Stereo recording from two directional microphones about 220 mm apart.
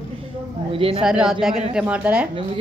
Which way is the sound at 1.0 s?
5° right (ahead or behind).